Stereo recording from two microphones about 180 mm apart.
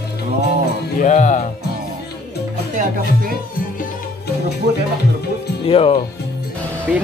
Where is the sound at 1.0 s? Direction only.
45° left (ahead or behind).